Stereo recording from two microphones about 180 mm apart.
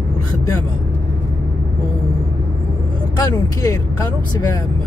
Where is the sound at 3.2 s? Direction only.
15° left (ahead or behind).